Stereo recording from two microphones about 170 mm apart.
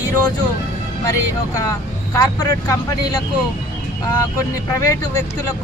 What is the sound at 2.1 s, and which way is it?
Speech, 20° left (ahead or behind).